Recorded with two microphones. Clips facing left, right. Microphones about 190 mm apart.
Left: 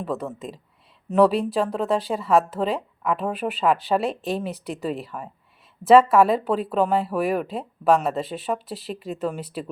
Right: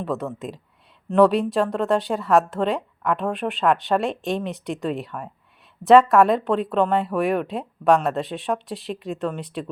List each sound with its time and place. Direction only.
0.0 s speech: centre (ahead or behind)